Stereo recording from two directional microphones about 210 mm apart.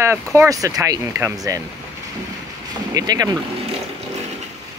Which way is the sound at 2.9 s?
15° right (ahead or behind).